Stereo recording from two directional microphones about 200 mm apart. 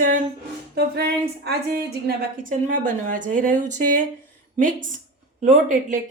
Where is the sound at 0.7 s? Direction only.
55° right (ahead or behind).